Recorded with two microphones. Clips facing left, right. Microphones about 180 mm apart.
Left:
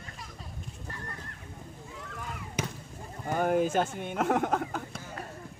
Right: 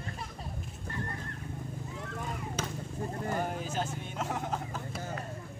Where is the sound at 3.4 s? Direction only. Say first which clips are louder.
Left 8 dB; 60° left (ahead or behind).